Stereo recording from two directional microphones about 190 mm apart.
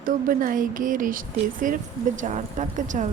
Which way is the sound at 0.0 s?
45° right (ahead or behind).